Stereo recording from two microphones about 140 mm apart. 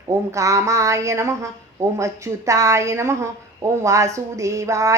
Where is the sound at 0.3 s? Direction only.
20° right (ahead or behind).